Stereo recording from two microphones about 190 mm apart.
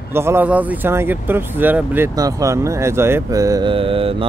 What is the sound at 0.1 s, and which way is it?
Speech, 15° right (ahead or behind).